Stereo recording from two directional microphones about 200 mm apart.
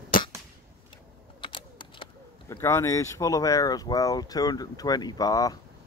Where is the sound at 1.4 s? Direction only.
25° left (ahead or behind).